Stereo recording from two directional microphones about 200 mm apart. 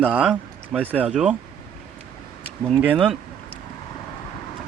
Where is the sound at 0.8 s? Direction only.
10° left (ahead or behind).